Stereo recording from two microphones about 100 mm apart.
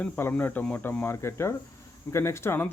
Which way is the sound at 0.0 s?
20° left (ahead or behind).